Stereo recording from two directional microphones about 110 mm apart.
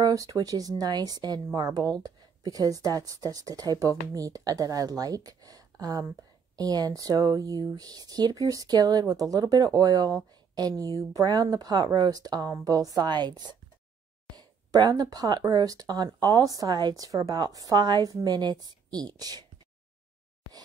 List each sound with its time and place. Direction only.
0.0 s speech: 30° right (ahead or behind)